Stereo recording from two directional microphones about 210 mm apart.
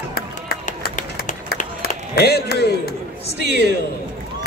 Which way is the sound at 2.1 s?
50° left (ahead or behind).